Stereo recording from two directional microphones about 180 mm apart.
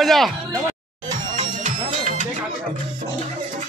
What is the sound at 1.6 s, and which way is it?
Music, 45° right (ahead or behind).